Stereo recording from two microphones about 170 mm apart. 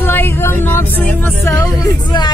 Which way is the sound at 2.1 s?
25° left (ahead or behind).